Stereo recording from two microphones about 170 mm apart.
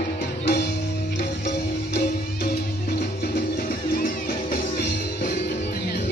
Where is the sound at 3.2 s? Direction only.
65° left (ahead or behind).